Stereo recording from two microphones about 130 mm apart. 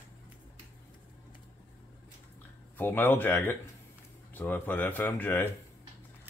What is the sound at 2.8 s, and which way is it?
Speech, 15° left (ahead or behind).